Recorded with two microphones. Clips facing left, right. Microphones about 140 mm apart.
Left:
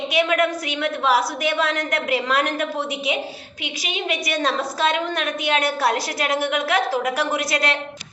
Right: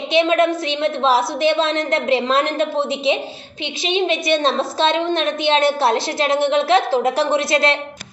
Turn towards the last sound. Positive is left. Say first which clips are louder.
# right 6 dB
turn(degrees=-25)  # may be behind; listen again after turning